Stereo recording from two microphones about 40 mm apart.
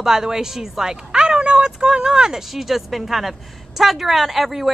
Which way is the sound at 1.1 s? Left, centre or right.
Right.